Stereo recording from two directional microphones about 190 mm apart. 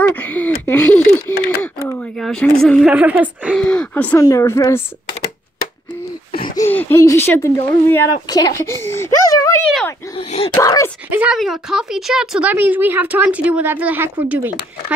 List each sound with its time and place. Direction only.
0.0 s speech: 10° left (ahead or behind); by 3.5 s 5° right (ahead or behind)
3.5 s a woman's voice: 5° left (ahead or behind)
6.7 s a woman's voice: 10° left (ahead or behind)
10.1 s speech: 30° left (ahead or behind)
10.6 s a woman's voice: 20° left (ahead or behind)
11.1 s speech: 5° right (ahead or behind)